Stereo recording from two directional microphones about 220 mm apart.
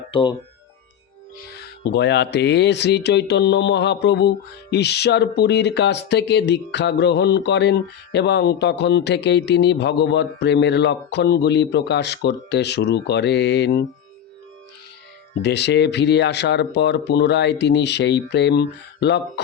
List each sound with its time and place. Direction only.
0.1 s speech: 20° left (ahead or behind)
1.8 s speech: 50° left (ahead or behind)
15.4 s speech: 50° left (ahead or behind)